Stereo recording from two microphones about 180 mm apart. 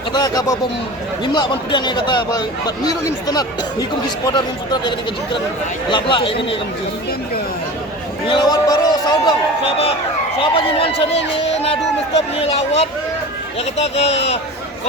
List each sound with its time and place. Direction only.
0.1 s speech: 20° left (ahead or behind)
8.3 s speech: 25° left (ahead or behind)